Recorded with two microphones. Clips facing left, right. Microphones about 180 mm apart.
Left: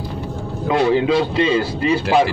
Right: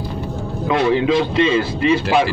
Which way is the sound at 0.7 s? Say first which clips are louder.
Even; 35° left (ahead or behind).